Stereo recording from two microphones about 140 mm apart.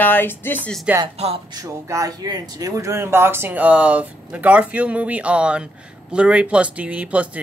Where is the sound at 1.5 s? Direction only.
25° right (ahead or behind).